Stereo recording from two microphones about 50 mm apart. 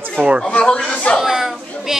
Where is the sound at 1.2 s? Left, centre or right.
Centre.